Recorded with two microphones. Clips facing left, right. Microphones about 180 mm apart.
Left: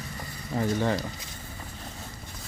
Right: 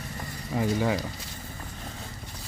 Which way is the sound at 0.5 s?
5° right (ahead or behind).